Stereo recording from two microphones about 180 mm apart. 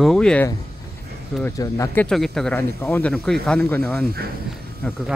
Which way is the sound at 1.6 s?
20° left (ahead or behind).